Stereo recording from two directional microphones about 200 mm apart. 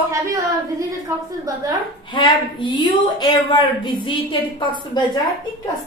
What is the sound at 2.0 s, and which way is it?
A woman's voice, 25° left (ahead or behind).